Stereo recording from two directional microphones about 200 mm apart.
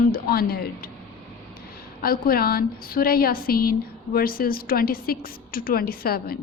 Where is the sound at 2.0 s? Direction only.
45° left (ahead or behind).